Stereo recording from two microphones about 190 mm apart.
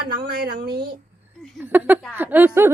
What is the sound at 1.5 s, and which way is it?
A woman's voice, 10° right (ahead or behind).